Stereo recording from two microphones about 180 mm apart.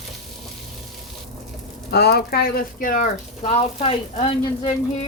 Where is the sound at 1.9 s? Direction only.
65° left (ahead or behind); by 4.7 s 30° left (ahead or behind).